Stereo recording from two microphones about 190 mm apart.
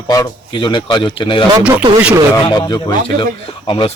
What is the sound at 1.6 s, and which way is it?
Speech, 5° right (ahead or behind).